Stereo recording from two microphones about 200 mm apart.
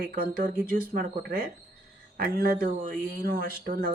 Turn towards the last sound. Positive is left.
turn(degrees=-45)  # may be behind; listen again after turning